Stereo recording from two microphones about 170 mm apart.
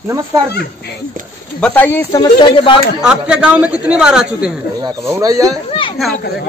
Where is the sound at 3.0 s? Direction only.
5° right (ahead or behind).